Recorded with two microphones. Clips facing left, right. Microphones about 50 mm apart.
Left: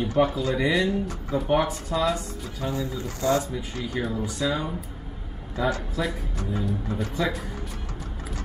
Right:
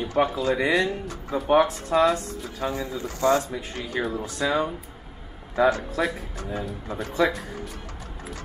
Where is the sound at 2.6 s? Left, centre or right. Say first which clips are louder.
Right 1 dB; right.